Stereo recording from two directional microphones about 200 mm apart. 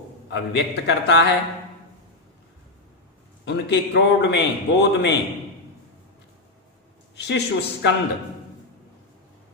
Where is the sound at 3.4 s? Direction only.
60° left (ahead or behind).